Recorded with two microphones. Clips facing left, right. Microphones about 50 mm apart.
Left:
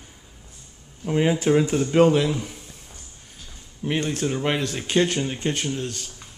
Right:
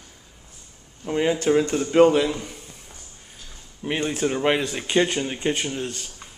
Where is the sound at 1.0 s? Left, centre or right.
Centre.